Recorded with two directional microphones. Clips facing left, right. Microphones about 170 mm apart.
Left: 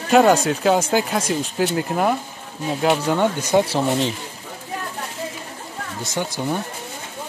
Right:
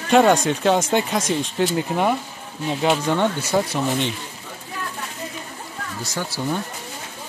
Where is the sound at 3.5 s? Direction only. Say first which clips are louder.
Left 3 dB; 30° left (ahead or behind).